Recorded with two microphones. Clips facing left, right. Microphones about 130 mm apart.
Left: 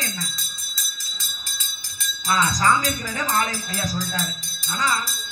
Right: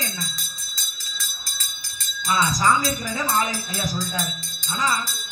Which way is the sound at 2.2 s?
5° right (ahead or behind).